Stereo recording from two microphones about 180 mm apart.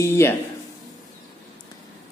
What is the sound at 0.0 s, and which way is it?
Speech, 15° left (ahead or behind).